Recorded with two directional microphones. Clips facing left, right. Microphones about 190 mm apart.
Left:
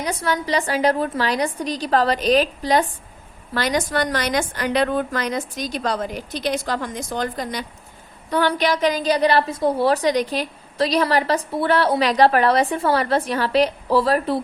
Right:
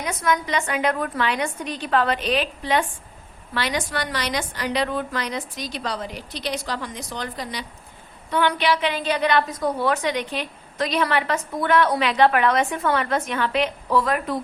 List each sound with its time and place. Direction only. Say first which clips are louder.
0.0 s a woman's voice: left 1 dB; 35° left (ahead or behind)